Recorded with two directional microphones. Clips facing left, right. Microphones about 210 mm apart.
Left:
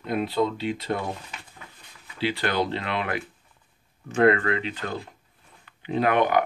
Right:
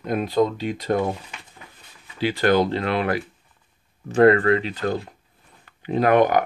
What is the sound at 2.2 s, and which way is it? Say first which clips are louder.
Speech: right 6 dB; 45° right (ahead or behind).